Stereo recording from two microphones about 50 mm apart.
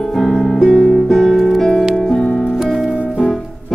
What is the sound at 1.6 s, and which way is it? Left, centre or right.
Music, centre.